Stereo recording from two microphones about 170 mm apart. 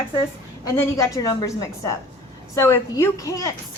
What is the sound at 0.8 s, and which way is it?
Speech, 20° left (ahead or behind).